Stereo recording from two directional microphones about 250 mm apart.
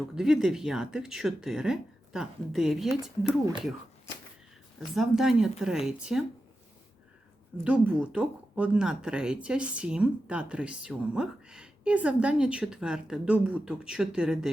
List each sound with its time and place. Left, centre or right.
0.2 s speech: centre
4.9 s speech: centre
7.6 s speech: centre